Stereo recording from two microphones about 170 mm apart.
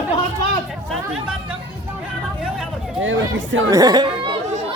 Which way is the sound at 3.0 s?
90° right.